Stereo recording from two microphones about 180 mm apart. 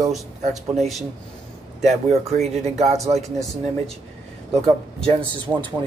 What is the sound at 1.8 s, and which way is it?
Speech, 35° right (ahead or behind).